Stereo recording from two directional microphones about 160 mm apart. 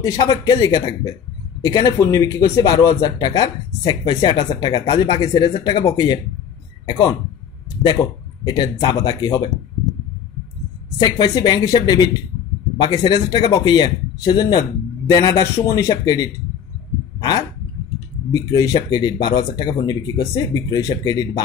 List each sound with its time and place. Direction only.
0.0 s speech: 20° left (ahead or behind)
11.0 s speech: 25° left (ahead or behind)
17.2 s a sound: 25° left (ahead or behind)
18.3 s speech: 20° left (ahead or behind)